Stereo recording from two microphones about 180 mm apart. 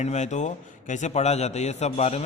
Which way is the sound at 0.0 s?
40° left (ahead or behind).